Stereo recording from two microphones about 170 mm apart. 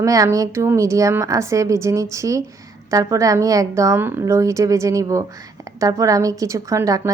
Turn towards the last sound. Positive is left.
turn(degrees=-20)  # may be behind; listen again after turning